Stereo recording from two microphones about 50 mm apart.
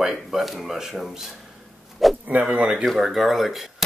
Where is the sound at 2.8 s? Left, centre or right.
Centre.